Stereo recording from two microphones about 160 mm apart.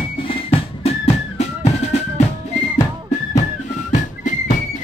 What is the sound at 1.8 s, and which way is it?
Drum, 45° left (ahead or behind).